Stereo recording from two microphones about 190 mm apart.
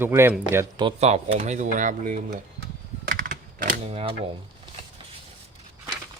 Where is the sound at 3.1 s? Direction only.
45° right (ahead or behind).